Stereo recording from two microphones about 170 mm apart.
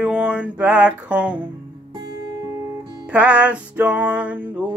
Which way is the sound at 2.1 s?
25° right (ahead or behind).